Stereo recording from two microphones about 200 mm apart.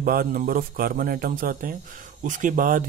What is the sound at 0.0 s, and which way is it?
Speech, 50° right (ahead or behind).